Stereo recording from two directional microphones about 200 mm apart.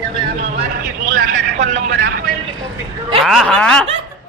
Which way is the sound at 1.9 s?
60° right (ahead or behind).